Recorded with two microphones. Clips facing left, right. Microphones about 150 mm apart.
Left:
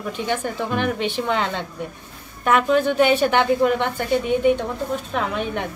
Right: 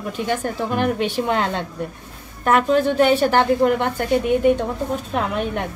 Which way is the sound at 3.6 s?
35° right (ahead or behind).